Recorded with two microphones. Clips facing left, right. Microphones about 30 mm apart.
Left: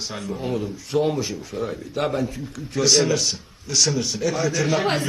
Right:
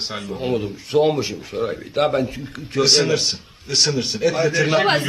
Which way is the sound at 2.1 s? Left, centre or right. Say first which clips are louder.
Right 4 dB; right.